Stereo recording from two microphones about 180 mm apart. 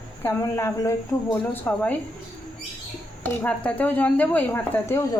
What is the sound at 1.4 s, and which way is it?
Speech, 5° left (ahead or behind).